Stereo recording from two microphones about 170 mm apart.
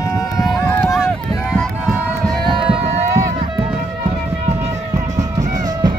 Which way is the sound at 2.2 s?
Centre (ahead or behind).